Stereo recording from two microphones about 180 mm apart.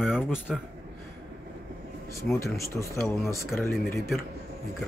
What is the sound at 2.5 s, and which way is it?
Speech, 15° left (ahead or behind).